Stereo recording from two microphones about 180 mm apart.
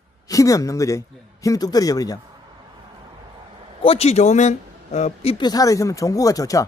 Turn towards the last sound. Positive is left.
turn(degrees=20)  # may be behind; listen again after turning